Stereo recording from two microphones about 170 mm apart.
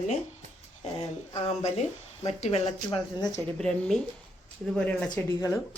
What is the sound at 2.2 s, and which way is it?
Speech, 40° left (ahead or behind).